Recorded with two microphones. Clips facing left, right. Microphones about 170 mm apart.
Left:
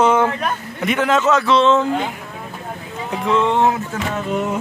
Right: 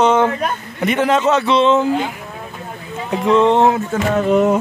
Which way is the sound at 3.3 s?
20° right (ahead or behind).